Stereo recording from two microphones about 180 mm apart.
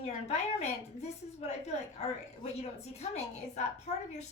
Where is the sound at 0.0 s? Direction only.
35° left (ahead or behind).